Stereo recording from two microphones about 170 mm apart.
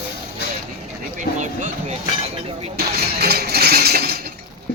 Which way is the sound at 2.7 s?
70° right (ahead or behind).